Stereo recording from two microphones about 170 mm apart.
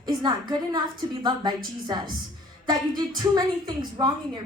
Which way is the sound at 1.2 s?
25° right (ahead or behind).